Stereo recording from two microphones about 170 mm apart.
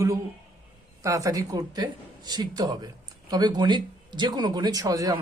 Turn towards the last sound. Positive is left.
turn(degrees=-20)  # may be behind; listen again after turning